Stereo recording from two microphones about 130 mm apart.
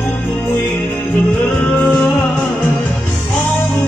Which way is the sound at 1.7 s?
10° left (ahead or behind).